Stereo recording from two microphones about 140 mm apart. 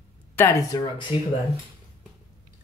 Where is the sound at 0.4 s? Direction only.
20° left (ahead or behind).